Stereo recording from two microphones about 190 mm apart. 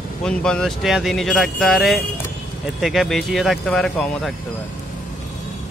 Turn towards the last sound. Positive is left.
turn(degrees=5)  # may be behind; listen again after turning